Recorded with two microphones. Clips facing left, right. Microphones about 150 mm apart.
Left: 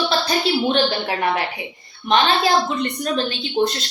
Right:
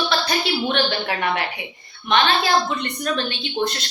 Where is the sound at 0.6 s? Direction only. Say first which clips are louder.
Left 3 dB; 30° left (ahead or behind).